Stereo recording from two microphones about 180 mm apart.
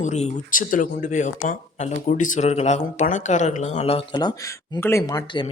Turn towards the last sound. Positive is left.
turn(degrees=15)  # may be behind; listen again after turning